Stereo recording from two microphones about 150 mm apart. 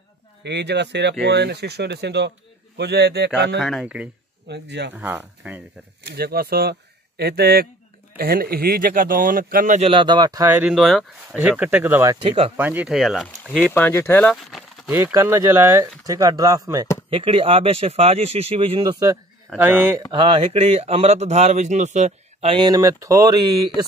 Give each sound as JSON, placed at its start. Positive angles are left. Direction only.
{"t": 1.2, "sound": "speech", "side_deg": -90}
{"t": 3.5, "sound": "speech", "side_deg": 0}
{"t": 6.0, "sound": "speech", "side_deg": -90}
{"t": 9.8, "sound": "speech", "side_deg": -35}
{"t": 10.5, "sound": "speech", "side_deg": -5}
{"t": 12.2, "sound": "speech", "side_deg": -40}
{"t": 12.5, "sound": "speech", "side_deg": -10}
{"t": 15.0, "sound": "speech", "side_deg": -15}
{"t": 17.1, "sound": "speech", "side_deg": -35}
{"t": 18.8, "sound": "speech", "side_deg": -25}
{"t": 20.1, "sound": "speech", "side_deg": -35}
{"t": 22.6, "sound": "speech", "side_deg": -25}